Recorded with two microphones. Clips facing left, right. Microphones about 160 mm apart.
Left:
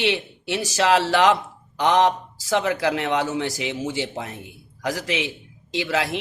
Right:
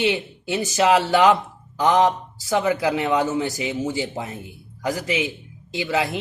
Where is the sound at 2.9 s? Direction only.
90° left.